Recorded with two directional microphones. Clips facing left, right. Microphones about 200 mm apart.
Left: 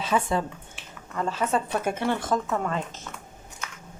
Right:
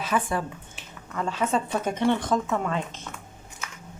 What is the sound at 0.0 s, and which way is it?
Speech, 25° left (ahead or behind).